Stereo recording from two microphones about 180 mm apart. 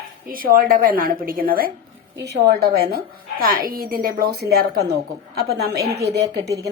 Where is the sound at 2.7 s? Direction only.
60° right (ahead or behind).